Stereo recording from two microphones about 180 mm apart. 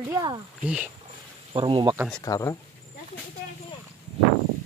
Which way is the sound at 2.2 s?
20° left (ahead or behind).